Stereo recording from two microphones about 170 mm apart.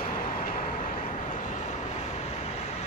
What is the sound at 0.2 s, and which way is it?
Vehicle, 55° left (ahead or behind).